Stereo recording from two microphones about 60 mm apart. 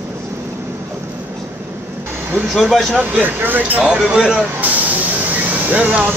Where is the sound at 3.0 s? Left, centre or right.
Right.